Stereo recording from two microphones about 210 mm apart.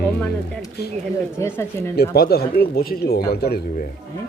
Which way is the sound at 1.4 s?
10° left (ahead or behind).